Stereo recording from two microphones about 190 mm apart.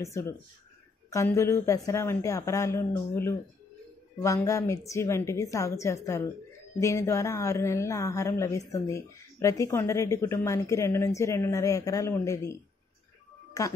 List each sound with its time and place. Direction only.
0.0 s speech: 15° left (ahead or behind)
13.5 s music: 15° left (ahead or behind)